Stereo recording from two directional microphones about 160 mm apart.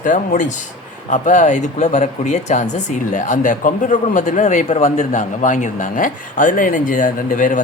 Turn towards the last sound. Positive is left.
turn(degrees=55)  # may be behind; listen again after turning